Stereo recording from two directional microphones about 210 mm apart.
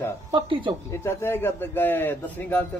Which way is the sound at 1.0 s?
10° left (ahead or behind).